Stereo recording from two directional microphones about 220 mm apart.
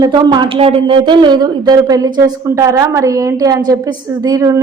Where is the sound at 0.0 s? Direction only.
20° right (ahead or behind).